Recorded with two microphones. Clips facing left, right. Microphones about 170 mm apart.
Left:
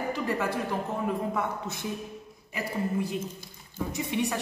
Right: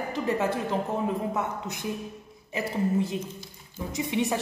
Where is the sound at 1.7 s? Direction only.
20° right (ahead or behind).